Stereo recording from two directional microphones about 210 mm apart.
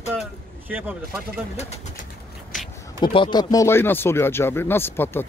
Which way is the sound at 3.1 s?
25° left (ahead or behind).